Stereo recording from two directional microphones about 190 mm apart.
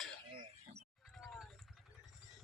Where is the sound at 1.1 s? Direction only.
5° left (ahead or behind).